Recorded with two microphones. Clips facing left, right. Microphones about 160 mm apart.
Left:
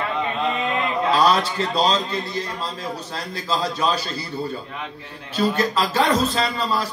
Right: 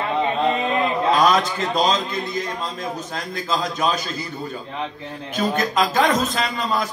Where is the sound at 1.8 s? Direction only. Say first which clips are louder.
Even; 35° left (ahead or behind).